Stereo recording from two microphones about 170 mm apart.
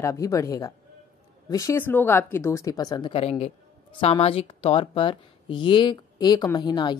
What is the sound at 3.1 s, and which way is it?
Speech, 35° left (ahead or behind).